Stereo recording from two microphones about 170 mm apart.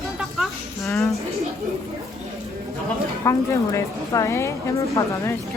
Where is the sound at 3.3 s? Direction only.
15° left (ahead or behind).